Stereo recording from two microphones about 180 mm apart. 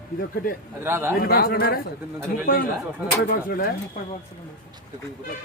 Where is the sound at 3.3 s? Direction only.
50° left (ahead or behind).